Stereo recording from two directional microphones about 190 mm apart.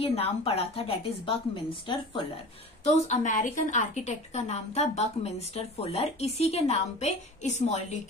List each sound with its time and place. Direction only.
0.0 s a woman's voice: 30° left (ahead or behind)
2.8 s a woman's voice: 40° left (ahead or behind)